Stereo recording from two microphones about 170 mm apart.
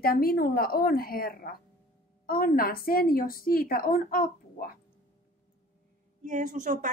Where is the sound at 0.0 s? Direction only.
60° left (ahead or behind).